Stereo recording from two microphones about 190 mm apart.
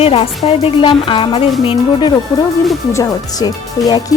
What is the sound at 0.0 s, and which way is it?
Speech, 30° left (ahead or behind).